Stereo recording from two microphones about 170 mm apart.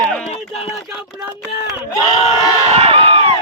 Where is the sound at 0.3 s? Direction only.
35° left (ahead or behind).